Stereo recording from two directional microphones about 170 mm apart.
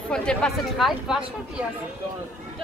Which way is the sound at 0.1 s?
5° left (ahead or behind).